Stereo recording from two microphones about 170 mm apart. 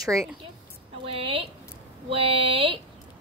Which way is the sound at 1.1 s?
35° right (ahead or behind).